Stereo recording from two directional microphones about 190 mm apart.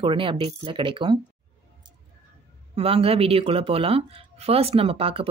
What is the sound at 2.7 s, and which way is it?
Speech, 30° right (ahead or behind).